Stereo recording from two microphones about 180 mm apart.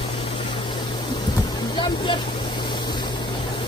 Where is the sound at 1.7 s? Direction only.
25° left (ahead or behind).